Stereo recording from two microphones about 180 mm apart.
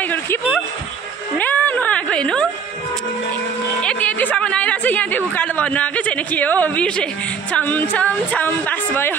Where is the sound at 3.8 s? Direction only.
5° left (ahead or behind).